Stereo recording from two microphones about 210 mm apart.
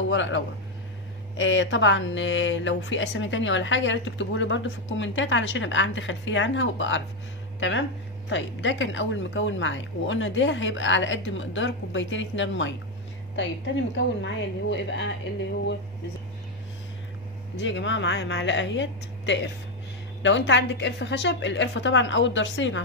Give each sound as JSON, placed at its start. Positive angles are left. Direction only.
{"t": 0.1, "sound": "a woman's voice", "side_deg": 60}
{"t": 8.3, "sound": "a woman's voice", "side_deg": 60}
{"t": 13.9, "sound": "a woman's voice", "side_deg": 60}
{"t": 17.6, "sound": "a woman's voice", "side_deg": 60}